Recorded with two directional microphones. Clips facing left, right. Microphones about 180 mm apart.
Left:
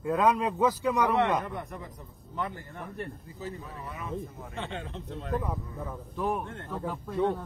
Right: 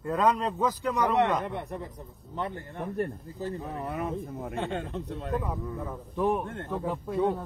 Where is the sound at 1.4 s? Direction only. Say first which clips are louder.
Right 2 dB; 35° right (ahead or behind).